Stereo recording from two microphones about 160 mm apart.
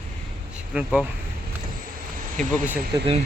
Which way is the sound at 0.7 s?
5° right (ahead or behind).